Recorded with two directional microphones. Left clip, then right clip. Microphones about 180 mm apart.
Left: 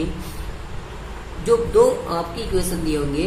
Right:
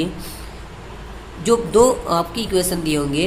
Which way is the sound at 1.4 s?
40° right (ahead or behind).